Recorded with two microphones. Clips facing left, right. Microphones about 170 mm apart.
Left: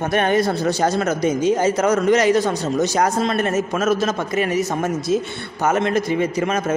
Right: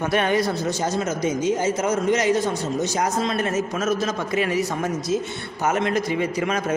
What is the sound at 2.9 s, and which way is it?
A man's voice, 60° left (ahead or behind).